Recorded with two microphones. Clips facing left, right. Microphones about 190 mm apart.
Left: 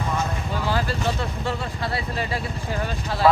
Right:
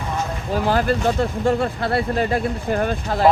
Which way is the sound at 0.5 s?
50° right (ahead or behind).